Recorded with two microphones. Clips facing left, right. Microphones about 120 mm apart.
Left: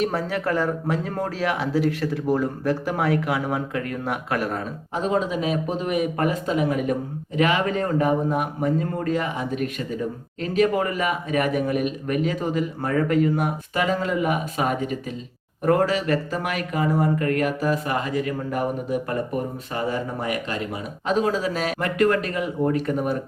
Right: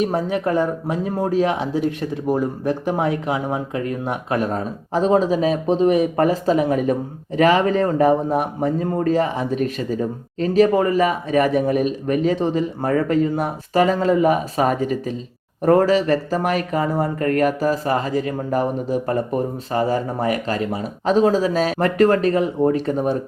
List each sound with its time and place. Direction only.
0.0 s speech: 20° right (ahead or behind)
4.9 s a man's voice: 35° right (ahead or behind)